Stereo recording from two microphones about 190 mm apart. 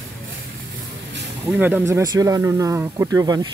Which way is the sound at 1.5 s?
10° right (ahead or behind).